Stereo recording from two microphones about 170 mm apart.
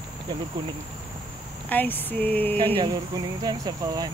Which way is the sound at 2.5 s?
30° right (ahead or behind).